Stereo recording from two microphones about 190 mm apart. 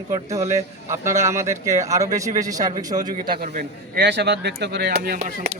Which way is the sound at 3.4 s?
45° right (ahead or behind).